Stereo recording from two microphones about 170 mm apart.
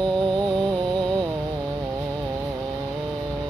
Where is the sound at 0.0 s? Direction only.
25° right (ahead or behind).